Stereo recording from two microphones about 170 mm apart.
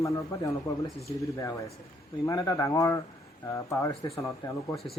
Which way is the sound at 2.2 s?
20° left (ahead or behind).